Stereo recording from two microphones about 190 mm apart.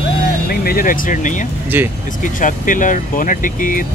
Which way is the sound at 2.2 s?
45° left (ahead or behind).